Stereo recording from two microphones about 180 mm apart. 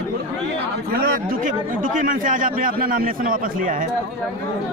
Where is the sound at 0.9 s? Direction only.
55° right (ahead or behind).